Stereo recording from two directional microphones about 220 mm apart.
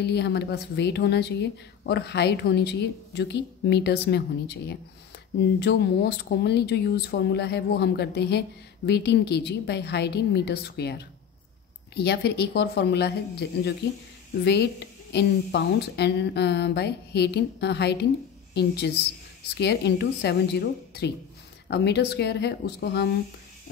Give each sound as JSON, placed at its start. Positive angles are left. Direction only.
{"t": 0.0, "sound": "speech", "side_deg": 50}